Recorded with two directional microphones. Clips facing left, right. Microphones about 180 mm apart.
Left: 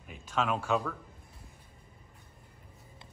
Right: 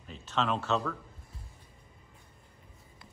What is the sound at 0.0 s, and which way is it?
Speech, 10° left (ahead or behind).